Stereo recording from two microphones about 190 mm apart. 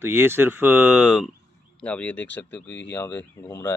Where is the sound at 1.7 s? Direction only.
5° left (ahead or behind).